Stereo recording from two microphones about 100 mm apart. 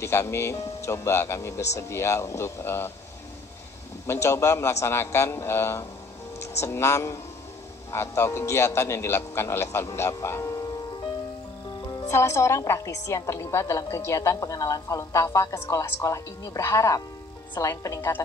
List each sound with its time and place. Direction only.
0.0 s a man's voice: 30° left (ahead or behind)
4.1 s a man's voice: 25° left (ahead or behind)
12.1 s a woman's voice: 30° left (ahead or behind)